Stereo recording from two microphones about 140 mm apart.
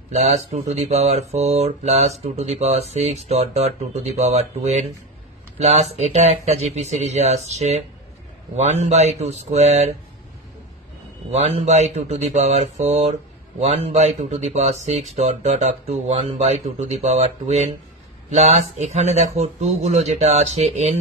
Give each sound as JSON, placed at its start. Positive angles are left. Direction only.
{"t": 0.1, "sound": "speech", "side_deg": -55}
{"t": 11.3, "sound": "speech", "side_deg": -50}